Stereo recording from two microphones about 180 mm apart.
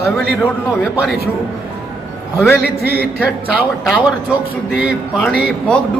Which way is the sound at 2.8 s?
60° right (ahead or behind).